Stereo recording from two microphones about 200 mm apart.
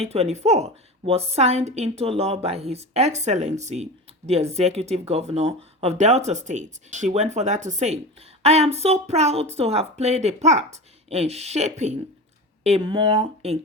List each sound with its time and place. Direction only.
0.0 s a woman's voice: 30° right (ahead or behind)